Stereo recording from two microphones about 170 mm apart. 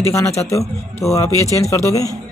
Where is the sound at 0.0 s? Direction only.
15° left (ahead or behind).